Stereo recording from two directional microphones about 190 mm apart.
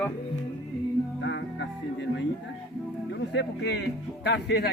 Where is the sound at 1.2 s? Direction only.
70° left (ahead or behind).